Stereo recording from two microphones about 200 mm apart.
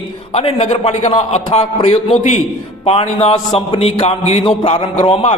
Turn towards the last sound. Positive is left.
turn(degrees=30)  # may be behind; listen again after turning